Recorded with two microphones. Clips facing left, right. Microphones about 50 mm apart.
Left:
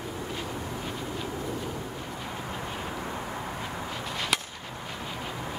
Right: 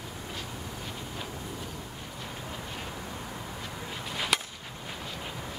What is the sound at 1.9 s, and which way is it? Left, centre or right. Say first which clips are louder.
Vehicle: left 4 dB; centre.